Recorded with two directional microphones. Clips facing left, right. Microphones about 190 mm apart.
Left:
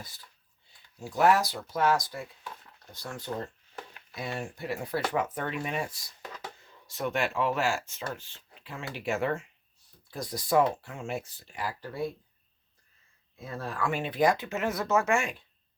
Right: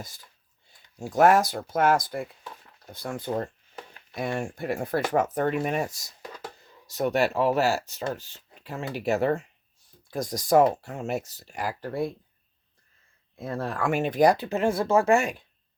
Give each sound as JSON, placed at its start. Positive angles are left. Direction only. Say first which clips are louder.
{"t": 0.9, "sound": "speech", "louder": "right 5 dB", "side_deg": -45}
{"t": 13.4, "sound": "speech", "louder": "right 5 dB", "side_deg": -55}